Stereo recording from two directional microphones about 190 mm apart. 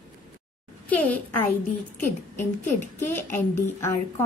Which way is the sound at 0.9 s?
10° left (ahead or behind).